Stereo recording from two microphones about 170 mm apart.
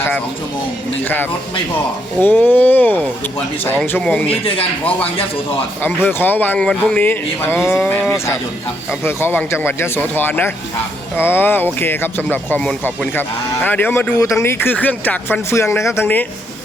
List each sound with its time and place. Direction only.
1.0 s speech: 10° left (ahead or behind)
4.3 s speech: 35° left (ahead or behind)
5.8 s speech: 10° left (ahead or behind)
9.0 s speech: 15° left (ahead or behind)